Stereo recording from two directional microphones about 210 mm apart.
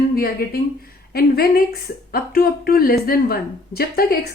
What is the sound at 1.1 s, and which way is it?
Speech, 45° left (ahead or behind).